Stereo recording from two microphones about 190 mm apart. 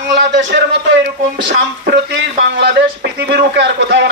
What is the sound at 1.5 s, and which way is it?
A man's voice, 65° right (ahead or behind).